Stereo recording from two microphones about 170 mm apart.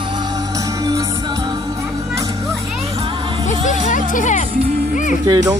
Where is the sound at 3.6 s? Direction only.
45° left (ahead or behind).